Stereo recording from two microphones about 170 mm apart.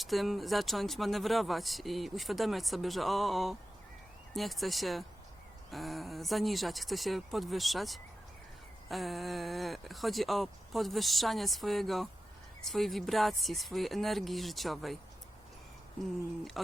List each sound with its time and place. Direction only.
0.0 s speech: centre (ahead or behind)